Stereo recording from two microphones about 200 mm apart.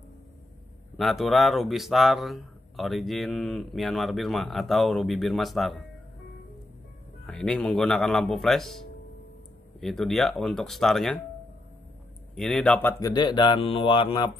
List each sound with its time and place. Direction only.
0.9 s speech: centre (ahead or behind)
7.2 s speech: 5° left (ahead or behind)
12.4 s speech: 5° left (ahead or behind)
13.1 s speech: 20° left (ahead or behind)